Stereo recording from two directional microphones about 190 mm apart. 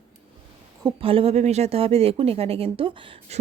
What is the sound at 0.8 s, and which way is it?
Speech, 30° right (ahead or behind).